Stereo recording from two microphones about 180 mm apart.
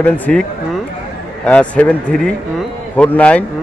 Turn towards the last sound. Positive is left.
turn(degrees=10)  # may be behind; listen again after turning